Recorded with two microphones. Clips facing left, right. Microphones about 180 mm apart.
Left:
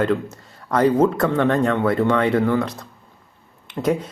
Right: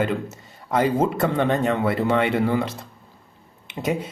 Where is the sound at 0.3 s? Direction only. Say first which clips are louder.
Even; centre (ahead or behind).